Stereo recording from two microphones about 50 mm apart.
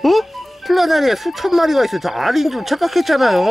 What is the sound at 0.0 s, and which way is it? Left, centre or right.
Speech, centre.